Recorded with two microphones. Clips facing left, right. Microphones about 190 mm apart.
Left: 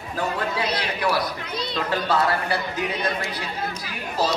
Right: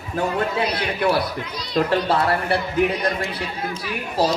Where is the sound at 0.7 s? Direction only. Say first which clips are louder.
Right 4 dB; 25° right (ahead or behind).